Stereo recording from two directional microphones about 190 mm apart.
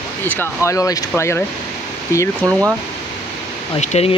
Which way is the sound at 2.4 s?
15° right (ahead or behind).